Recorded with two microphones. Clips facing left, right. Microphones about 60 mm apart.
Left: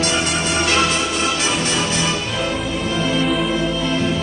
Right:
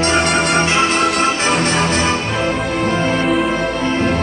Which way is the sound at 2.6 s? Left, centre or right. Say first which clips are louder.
Right 4 dB; right.